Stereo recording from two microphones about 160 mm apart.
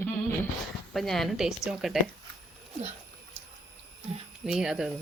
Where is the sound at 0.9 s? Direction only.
Centre (ahead or behind).